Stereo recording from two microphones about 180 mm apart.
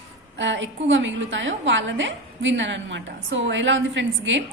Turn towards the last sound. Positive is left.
turn(degrees=-90)